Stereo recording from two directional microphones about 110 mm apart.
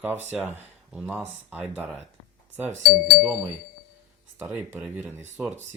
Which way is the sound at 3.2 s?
10° right (ahead or behind).